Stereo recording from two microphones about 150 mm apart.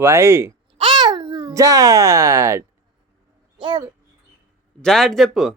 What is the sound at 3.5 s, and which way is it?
Speech, 30° right (ahead or behind).